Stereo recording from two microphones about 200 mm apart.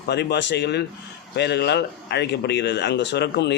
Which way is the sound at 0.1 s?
55° left (ahead or behind).